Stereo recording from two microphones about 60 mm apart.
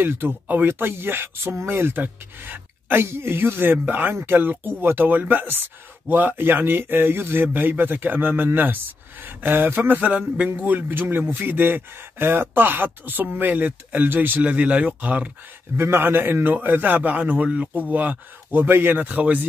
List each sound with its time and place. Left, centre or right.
0.0 s a man's voice: right
14.4 s a man's voice: right
15.8 s a man's voice: right